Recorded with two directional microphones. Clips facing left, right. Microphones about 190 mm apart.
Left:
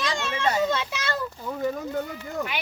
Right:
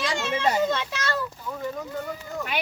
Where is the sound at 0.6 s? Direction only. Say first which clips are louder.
Even; 5° left (ahead or behind).